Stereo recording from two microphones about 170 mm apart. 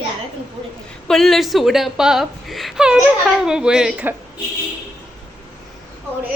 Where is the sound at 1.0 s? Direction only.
Centre (ahead or behind).